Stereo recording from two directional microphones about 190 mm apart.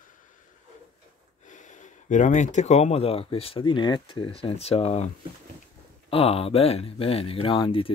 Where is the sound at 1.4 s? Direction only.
40° left (ahead or behind).